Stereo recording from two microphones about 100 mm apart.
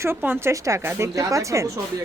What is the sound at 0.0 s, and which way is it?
A woman's voice, 20° right (ahead or behind).